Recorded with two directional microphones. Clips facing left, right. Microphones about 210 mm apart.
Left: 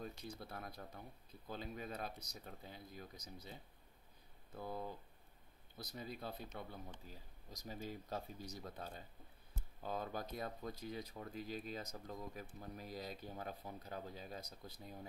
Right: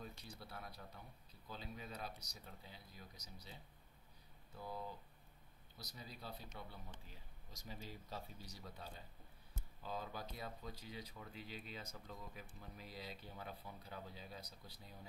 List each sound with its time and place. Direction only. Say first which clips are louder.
0.0 s speech: left 5 dB; 50° left (ahead or behind)
4.6 s speech: left 3 dB; 55° left (ahead or behind)